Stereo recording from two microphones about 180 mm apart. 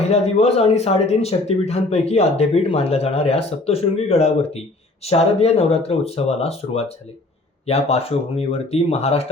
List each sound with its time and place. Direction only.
0.0 s speech: 35° left (ahead or behind)